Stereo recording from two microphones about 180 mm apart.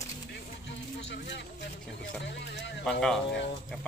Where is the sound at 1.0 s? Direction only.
75° left (ahead or behind).